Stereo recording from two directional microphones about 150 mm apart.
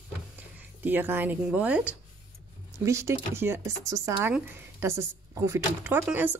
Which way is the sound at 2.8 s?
20° right (ahead or behind).